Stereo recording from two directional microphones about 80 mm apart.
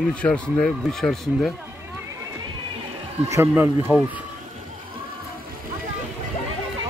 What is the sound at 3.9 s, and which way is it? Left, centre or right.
Speech, right.